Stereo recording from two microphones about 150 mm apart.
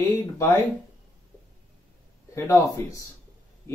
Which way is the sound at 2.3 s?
20° left (ahead or behind).